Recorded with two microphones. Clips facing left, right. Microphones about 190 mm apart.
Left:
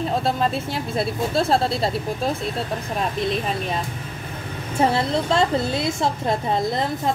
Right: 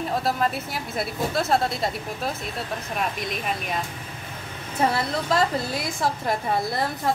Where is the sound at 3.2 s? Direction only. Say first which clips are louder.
Left 6 dB; 30° left (ahead or behind).